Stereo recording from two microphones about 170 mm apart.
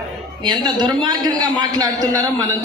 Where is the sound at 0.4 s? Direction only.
25° right (ahead or behind).